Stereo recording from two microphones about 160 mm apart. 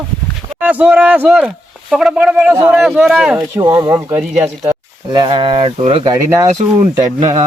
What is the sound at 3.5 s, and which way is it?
Speech, 20° right (ahead or behind).